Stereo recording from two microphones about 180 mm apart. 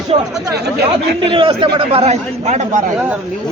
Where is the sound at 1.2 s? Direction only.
30° right (ahead or behind).